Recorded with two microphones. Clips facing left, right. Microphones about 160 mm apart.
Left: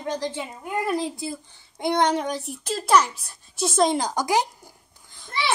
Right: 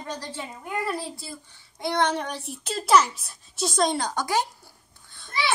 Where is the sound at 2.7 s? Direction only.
Centre (ahead or behind).